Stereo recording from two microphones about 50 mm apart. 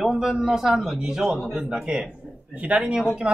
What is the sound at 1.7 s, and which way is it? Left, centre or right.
Speech, right.